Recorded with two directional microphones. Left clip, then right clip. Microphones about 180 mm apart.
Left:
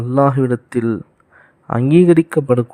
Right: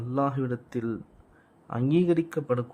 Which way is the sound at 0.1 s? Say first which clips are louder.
Left 14 dB; 40° left (ahead or behind).